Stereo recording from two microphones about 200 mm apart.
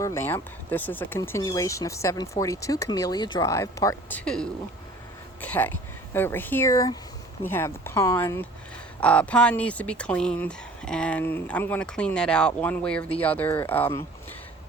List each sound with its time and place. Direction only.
0.0 s speech: 15° left (ahead or behind)
5.4 s a sound: 10° left (ahead or behind)
6.1 s speech: 10° left (ahead or behind)